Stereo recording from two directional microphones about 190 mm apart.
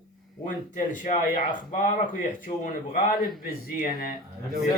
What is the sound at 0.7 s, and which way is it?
A man's voice, 40° left (ahead or behind).